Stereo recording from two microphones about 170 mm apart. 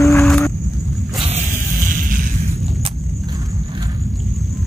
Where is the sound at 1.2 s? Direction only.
45° right (ahead or behind).